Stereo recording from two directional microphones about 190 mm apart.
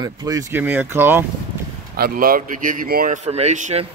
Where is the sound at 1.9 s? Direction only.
50° right (ahead or behind).